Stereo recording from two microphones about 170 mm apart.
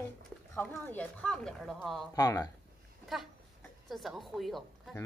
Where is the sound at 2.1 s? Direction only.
20° left (ahead or behind).